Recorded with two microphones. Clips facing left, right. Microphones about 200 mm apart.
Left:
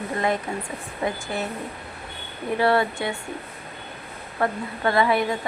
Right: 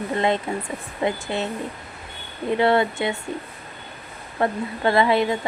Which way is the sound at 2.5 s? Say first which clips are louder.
Right 2 dB; 20° right (ahead or behind).